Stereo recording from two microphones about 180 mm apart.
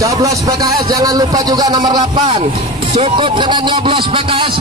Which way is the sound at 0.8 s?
20° right (ahead or behind).